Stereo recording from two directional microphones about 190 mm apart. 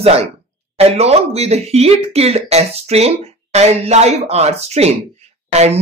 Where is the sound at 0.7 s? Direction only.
35° right (ahead or behind).